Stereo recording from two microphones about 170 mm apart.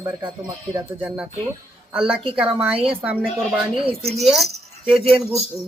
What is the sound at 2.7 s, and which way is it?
Speech, 35° right (ahead or behind).